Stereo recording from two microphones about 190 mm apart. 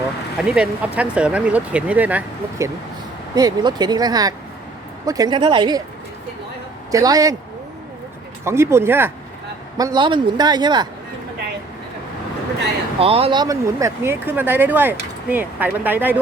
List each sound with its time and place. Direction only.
0.3 s speech: 5° right (ahead or behind)
3.3 s a man's voice: 20° right (ahead or behind)
6.9 s a man's voice: 20° right (ahead or behind)
8.4 s a man's voice: 15° right (ahead or behind)
13.0 s speech: 30° right (ahead or behind); by 16.1 s 10° right (ahead or behind)